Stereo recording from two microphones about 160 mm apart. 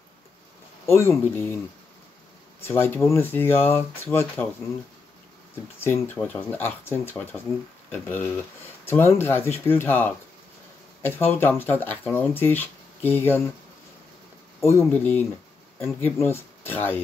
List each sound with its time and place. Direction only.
0.8 s speech: 15° left (ahead or behind)
2.6 s speech: 15° left (ahead or behind)
5.8 s speech: 10° left (ahead or behind)
14.6 s speech: 15° left (ahead or behind)